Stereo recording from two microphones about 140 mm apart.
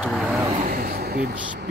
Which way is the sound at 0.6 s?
90° right.